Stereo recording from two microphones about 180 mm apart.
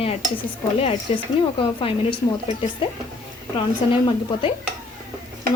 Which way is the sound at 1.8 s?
30° left (ahead or behind).